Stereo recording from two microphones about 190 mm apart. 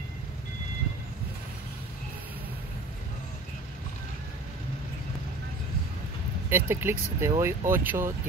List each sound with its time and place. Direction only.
6.5 s speech: 10° right (ahead or behind)